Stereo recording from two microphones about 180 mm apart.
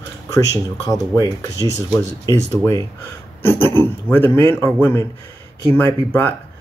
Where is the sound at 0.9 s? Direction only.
20° left (ahead or behind).